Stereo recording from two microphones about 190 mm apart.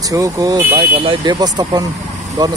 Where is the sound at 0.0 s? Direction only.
20° right (ahead or behind).